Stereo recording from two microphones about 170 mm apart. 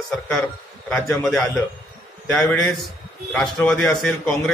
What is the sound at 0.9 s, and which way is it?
A man's voice, 5° left (ahead or behind).